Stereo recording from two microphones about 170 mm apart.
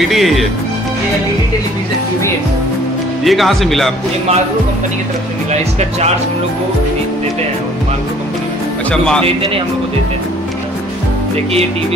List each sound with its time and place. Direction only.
0.1 s speech: centre (ahead or behind)
3.3 s speech: centre (ahead or behind)
5.5 s speech: 40° right (ahead or behind)